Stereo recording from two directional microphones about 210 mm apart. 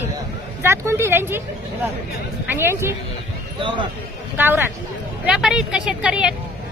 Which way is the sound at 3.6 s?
25° right (ahead or behind).